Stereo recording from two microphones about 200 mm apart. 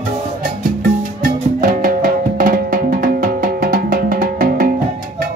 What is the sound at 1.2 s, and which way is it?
Music, 45° right (ahead or behind).